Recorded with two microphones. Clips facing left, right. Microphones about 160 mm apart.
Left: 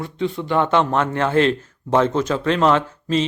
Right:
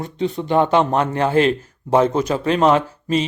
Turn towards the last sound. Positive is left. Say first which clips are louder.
# right 1 dB
turn(degrees=-10)  # may be behind; listen again after turning